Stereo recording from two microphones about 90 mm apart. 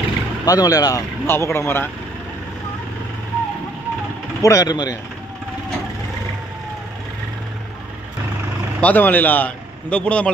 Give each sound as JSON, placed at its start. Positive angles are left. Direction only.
{"t": 0.5, "sound": "speech", "side_deg": 45}
{"t": 1.2, "sound": "speech", "side_deg": 30}
{"t": 4.4, "sound": "speech", "side_deg": 40}
{"t": 8.8, "sound": "speech", "side_deg": 20}